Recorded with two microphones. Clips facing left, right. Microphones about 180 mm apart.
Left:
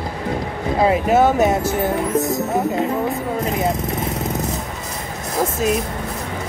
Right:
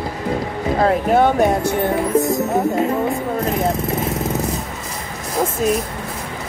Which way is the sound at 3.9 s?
20° left (ahead or behind).